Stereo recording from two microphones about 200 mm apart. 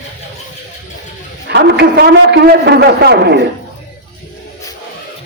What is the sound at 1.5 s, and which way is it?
A man's voice, 55° right (ahead or behind).